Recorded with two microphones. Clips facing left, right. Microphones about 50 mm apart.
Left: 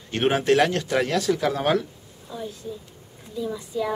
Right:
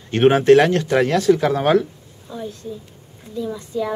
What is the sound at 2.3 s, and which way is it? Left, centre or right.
A woman's voice, centre.